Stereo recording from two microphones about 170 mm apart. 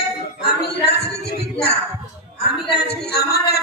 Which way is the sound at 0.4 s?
70° left (ahead or behind).